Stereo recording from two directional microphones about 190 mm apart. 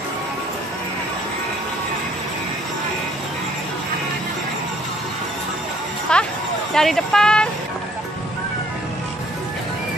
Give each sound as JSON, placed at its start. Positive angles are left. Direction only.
{"t": 6.1, "sound": "music", "side_deg": 5}
{"t": 6.7, "sound": "speech", "side_deg": 0}